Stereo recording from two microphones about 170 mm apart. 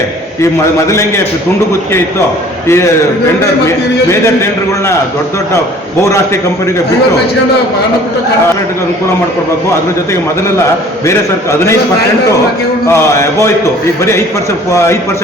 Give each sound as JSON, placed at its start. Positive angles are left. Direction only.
{"t": 0.9, "sound": "mantra", "side_deg": 15}
{"t": 2.6, "sound": "mantra", "side_deg": 15}
{"t": 6.0, "sound": "mantra", "side_deg": 15}
{"t": 12.9, "sound": "mantra", "side_deg": 15}
{"t": 14.7, "sound": "mantra", "side_deg": 15}